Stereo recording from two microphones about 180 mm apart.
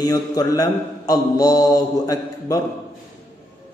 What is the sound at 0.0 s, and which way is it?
A man's voice, 20° left (ahead or behind).